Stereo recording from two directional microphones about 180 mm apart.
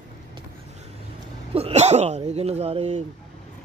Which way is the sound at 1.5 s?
35° right (ahead or behind).